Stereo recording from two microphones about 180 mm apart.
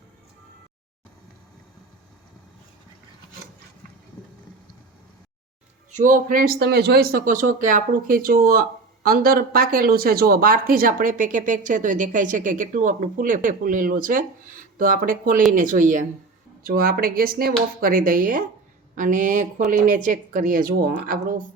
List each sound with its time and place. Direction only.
5.9 s speech: 50° right (ahead or behind)